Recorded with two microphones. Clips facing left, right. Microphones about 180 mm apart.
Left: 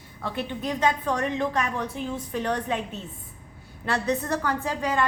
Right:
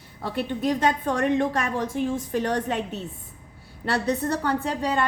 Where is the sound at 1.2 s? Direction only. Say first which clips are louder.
Right 6 dB; 50° right (ahead or behind).